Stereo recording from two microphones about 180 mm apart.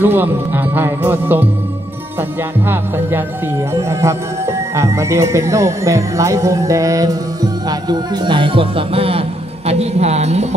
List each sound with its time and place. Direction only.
0.0 s speech: 10° right (ahead or behind)
3.7 s speech: 15° right (ahead or behind); by 10.4 s 35° right (ahead or behind)